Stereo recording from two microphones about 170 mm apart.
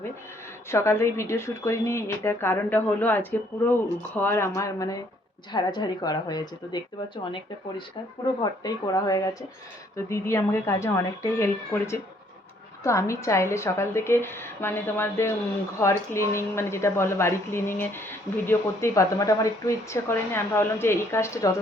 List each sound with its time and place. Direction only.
0.7 s a woman's voice: 15° left (ahead or behind)